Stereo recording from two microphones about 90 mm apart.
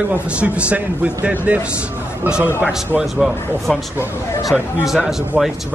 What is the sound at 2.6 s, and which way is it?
Speech, 5° right (ahead or behind).